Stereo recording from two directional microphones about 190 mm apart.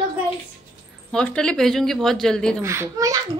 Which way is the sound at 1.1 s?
5° left (ahead or behind).